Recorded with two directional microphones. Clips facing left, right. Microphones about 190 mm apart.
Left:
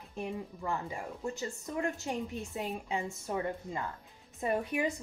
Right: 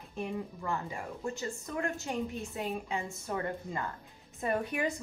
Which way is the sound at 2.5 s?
20° left (ahead or behind).